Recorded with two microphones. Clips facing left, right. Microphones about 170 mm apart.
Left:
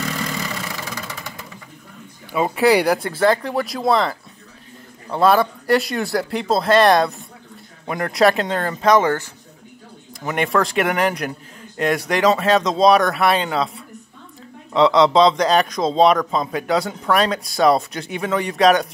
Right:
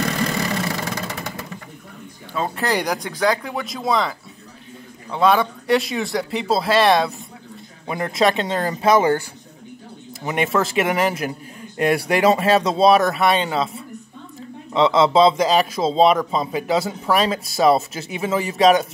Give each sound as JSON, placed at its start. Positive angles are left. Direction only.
{"t": 2.3, "sound": "a man's voice", "side_deg": 10}
{"t": 10.2, "sound": "a man's voice", "side_deg": 0}